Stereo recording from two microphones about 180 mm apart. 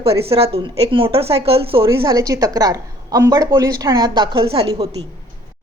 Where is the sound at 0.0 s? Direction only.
30° right (ahead or behind).